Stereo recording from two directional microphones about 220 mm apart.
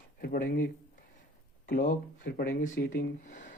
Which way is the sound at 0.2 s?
40° left (ahead or behind).